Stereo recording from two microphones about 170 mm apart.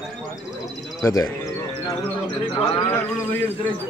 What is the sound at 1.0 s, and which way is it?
Speech, 20° left (ahead or behind).